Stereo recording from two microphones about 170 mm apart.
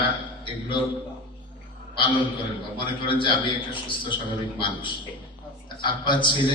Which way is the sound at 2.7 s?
30° left (ahead or behind).